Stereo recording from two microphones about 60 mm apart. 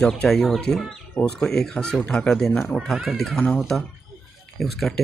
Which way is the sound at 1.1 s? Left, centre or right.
Left.